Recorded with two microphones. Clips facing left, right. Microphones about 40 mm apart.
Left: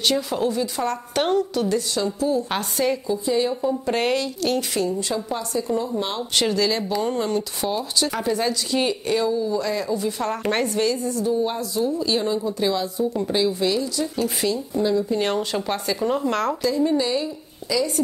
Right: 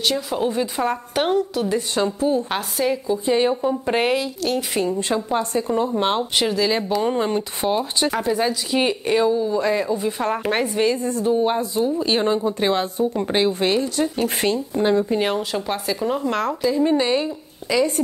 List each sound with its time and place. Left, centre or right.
0.0 s speech: centre
0.5 s speech: right
1.1 s a woman's voice: centre
2.0 s speech: right
2.5 s a woman's voice: centre
3.3 s speech: right
3.8 s a woman's voice: centre
4.7 s speech: right
6.3 s a woman's voice: centre
7.0 s speech: right
8.1 s speech: centre; by 15.0 s right
15.3 s speech: centre
16.8 s a woman's voice: right